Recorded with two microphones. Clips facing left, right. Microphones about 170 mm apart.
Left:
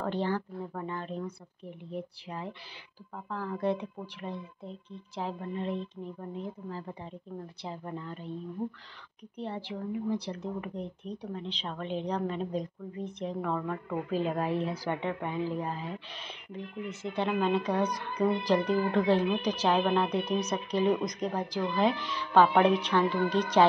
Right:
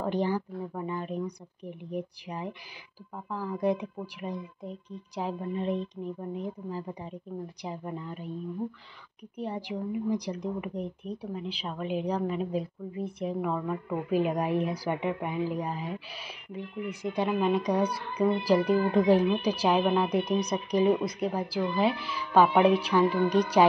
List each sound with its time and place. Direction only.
0.0 s a woman's voice: 15° right (ahead or behind)
9.4 s a woman's voice: 15° right (ahead or behind)